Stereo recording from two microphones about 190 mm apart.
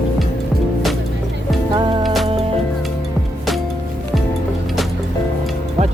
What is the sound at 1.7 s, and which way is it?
Music, 25° right (ahead or behind).